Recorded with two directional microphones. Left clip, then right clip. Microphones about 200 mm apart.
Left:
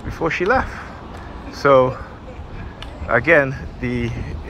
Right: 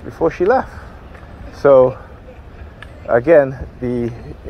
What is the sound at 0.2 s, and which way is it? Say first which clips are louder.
Speech: right 4 dB; 40° right (ahead or behind).